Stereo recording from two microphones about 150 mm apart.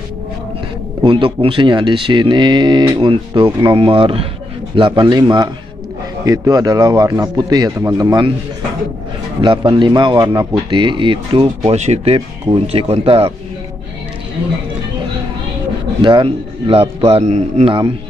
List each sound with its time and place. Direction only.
1.0 s speech: 35° right (ahead or behind)
9.4 s speech: 30° right (ahead or behind)
11.7 s speech: 45° right (ahead or behind)
16.0 s speech: 30° right (ahead or behind)